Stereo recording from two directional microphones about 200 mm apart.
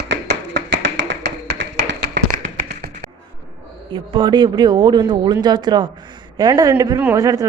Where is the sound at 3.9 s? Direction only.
20° right (ahead or behind).